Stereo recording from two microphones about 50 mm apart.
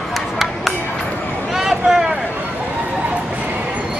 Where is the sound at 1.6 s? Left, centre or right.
Centre.